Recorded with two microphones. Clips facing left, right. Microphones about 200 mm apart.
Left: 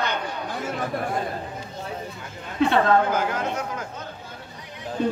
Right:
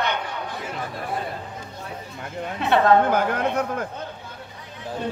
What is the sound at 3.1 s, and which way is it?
Speech, 60° right (ahead or behind).